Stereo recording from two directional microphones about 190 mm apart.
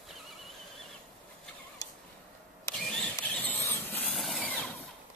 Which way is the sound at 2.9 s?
10° left (ahead or behind).